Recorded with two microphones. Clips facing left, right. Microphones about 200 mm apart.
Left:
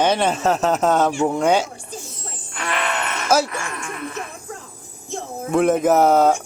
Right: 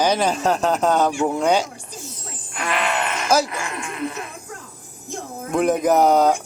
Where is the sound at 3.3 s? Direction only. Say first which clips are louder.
Left 1 dB; 5° left (ahead or behind).